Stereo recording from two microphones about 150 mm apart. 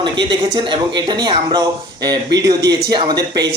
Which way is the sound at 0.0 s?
30° right (ahead or behind).